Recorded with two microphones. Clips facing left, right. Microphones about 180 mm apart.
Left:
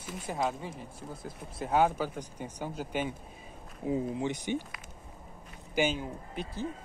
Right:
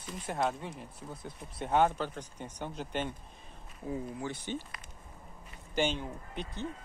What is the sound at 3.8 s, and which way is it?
Speech, 20° left (ahead or behind).